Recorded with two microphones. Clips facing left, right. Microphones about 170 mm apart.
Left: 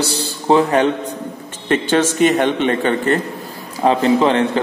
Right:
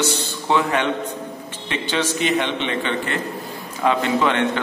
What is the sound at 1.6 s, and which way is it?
A man's voice, 50° left (ahead or behind).